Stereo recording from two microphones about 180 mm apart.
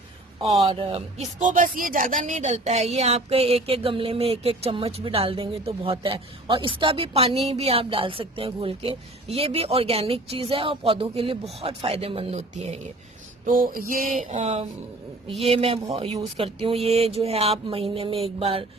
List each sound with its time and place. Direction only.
0.4 s speech: 30° right (ahead or behind)
13.4 s a sound: 50° right (ahead or behind)
15.4 s speech: 30° right (ahead or behind)